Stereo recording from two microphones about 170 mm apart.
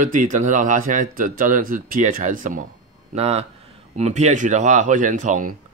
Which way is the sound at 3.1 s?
40° right (ahead or behind).